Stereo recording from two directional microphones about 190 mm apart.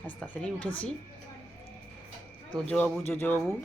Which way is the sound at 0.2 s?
5° left (ahead or behind).